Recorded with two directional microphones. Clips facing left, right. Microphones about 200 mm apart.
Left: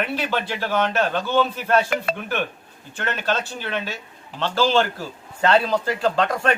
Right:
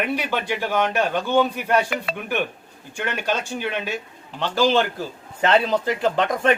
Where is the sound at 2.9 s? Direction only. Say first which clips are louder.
Even; 10° right (ahead or behind).